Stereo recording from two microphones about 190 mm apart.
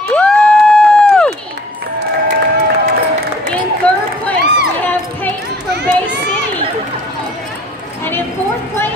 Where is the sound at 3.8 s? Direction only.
5° left (ahead or behind).